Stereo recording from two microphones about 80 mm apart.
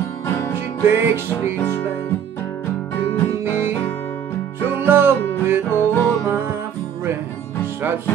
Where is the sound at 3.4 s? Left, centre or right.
Right.